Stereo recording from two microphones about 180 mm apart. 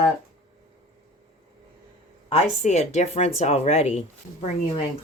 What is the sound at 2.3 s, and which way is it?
Speech, 40° left (ahead or behind).